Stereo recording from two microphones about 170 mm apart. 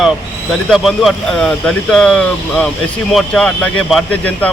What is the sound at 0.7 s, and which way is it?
Speech, centre (ahead or behind).